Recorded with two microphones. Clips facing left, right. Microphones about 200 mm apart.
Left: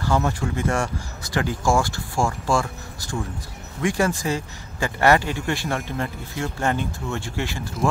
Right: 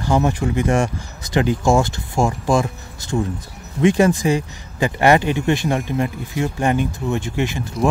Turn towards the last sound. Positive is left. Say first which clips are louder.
# right 5 dB
turn(degrees=-20)  # may be behind; listen again after turning